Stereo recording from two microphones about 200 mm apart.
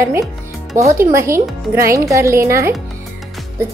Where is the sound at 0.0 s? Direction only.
15° right (ahead or behind).